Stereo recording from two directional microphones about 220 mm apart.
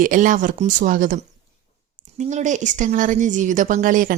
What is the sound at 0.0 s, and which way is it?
Speech, 35° right (ahead or behind).